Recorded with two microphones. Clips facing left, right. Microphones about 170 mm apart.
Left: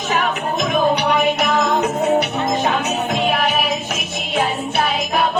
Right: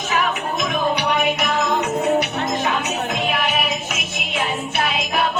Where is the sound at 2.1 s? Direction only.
35° left (ahead or behind).